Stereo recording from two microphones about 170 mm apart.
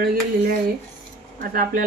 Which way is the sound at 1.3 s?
60° right (ahead or behind).